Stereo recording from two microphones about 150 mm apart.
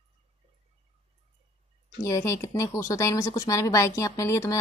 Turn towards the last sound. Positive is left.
turn(degrees=20)  # may be behind; listen again after turning